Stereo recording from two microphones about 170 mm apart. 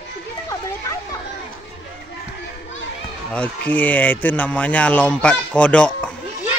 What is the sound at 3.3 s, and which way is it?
Speech, 10° left (ahead or behind).